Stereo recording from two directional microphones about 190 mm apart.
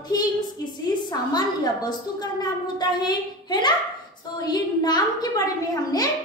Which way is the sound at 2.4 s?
20° left (ahead or behind).